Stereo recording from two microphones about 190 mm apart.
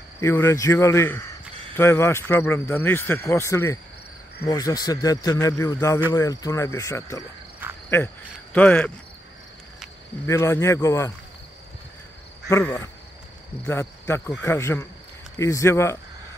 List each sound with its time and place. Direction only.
0.2 s speech: 15° left (ahead or behind)
7.6 s cricket: 10° right (ahead or behind)
8.5 s speech: 10° left (ahead or behind)
10.2 s speech: 15° left (ahead or behind)
12.4 s speech: 15° left (ahead or behind)